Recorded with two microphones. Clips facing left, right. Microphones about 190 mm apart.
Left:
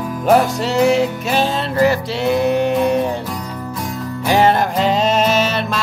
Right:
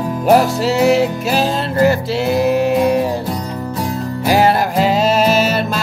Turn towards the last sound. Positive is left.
turn(degrees=-5)  # may be behind; listen again after turning